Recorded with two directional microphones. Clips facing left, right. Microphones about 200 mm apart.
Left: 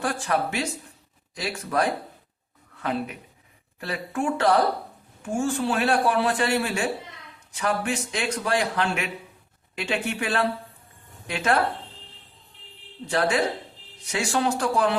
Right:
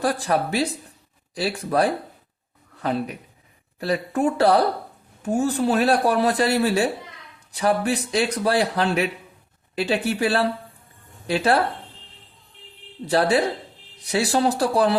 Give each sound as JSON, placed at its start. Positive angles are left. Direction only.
{"t": 0.0, "sound": "a man's voice", "side_deg": -35}
{"t": 13.1, "sound": "a man's voice", "side_deg": -35}